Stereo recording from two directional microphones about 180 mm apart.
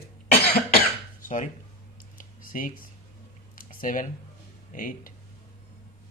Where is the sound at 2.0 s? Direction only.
50° left (ahead or behind).